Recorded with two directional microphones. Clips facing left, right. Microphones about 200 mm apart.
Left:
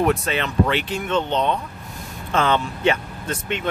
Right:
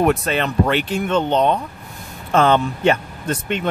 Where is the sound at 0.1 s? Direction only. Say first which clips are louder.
Right 3 dB; 50° right (ahead or behind).